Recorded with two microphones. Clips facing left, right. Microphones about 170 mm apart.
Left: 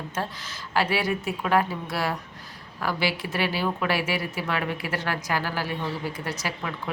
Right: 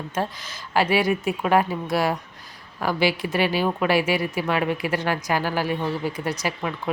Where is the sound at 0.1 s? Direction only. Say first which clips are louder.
Right 4 dB; 15° right (ahead or behind).